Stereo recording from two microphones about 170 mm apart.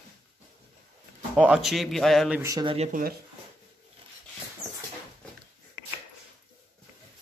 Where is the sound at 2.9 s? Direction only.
60° right (ahead or behind).